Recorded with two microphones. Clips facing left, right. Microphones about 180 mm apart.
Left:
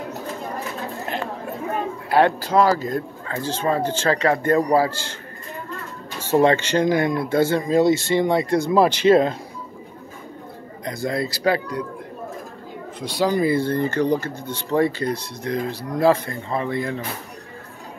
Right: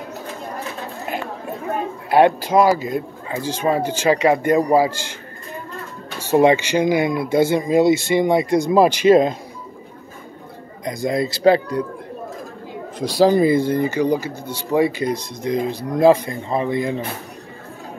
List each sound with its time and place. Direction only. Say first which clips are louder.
2.0 s speech: right 4 dB; 15° right (ahead or behind)
6.2 s speech: right 3 dB; 15° right (ahead or behind)
10.9 s speech: right 4 dB; 15° right (ahead or behind)
13.0 s speech: right 6 dB; 35° right (ahead or behind); by 17.0 s 20° right (ahead or behind)